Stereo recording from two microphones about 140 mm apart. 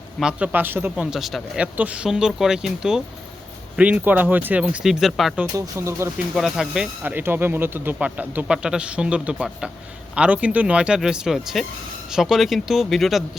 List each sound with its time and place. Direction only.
0.2 s speech: 5° right (ahead or behind)
5.5 s speech: 20° right (ahead or behind)
6.3 s speech: 5° right (ahead or behind)